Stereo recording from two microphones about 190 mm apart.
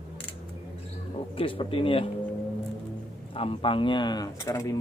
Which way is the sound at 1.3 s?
30° left (ahead or behind).